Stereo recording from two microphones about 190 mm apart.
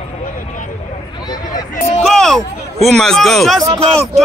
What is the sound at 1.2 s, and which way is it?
Speech, 20° left (ahead or behind).